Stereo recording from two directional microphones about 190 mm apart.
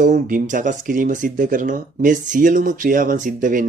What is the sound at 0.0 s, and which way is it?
Speech, 45° right (ahead or behind).